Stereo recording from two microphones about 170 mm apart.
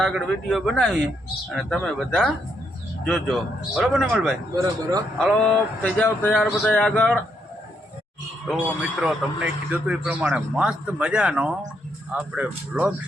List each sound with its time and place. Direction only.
0.2 s speech: 5° left (ahead or behind)
4.5 s speech: 20° right (ahead or behind)
5.3 s speech: 5° left (ahead or behind)
9.0 s a man's voice: 5° right (ahead or behind)